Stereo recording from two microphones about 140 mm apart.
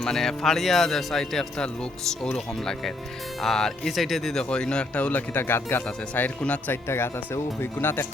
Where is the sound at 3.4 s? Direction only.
Centre (ahead or behind).